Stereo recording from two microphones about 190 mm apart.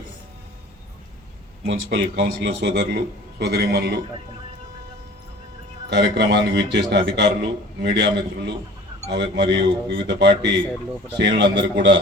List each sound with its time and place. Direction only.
1.6 s a man's voice: 65° right (ahead or behind)
5.9 s a man's voice: 65° right (ahead or behind)